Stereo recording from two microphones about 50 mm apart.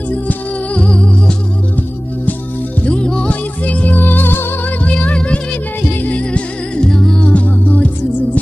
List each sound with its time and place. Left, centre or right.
0.7 s music: centre
2.8 s music: centre; by 4.5 s left
5.0 s music: left
6.9 s music: centre
7.2 s music: left